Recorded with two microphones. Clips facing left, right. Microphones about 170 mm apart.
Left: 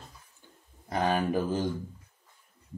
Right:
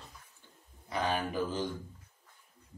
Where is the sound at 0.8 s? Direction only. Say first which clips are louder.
Left 5 dB; 45° left (ahead or behind).